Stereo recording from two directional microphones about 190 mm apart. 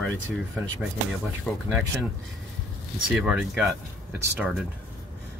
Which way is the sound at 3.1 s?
5° right (ahead or behind).